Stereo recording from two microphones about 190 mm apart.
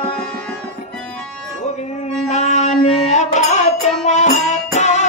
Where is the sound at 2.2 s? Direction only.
35° left (ahead or behind).